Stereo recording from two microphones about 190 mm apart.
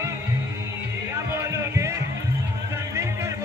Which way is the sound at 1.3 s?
15° right (ahead or behind).